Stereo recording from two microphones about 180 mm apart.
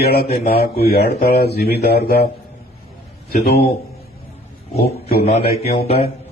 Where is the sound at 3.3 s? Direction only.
60° left (ahead or behind).